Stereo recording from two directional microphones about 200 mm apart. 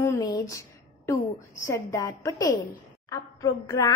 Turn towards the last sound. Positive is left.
turn(degrees=15)  # may be behind; listen again after turning